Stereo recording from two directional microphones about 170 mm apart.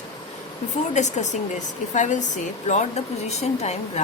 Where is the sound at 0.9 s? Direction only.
45° left (ahead or behind).